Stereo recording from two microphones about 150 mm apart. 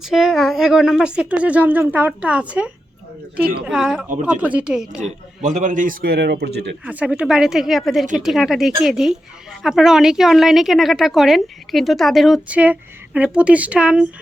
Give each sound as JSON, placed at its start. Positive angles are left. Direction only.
{"t": 0.0, "sound": "speech", "side_deg": -5}
{"t": 3.7, "sound": "speech", "side_deg": -5}
{"t": 4.9, "sound": "a man's voice", "side_deg": -55}
{"t": 6.8, "sound": "speech", "side_deg": -10}